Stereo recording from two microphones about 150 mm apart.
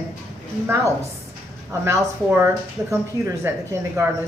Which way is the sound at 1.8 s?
15° right (ahead or behind).